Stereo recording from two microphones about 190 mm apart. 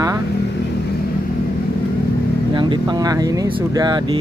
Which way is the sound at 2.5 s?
25° right (ahead or behind).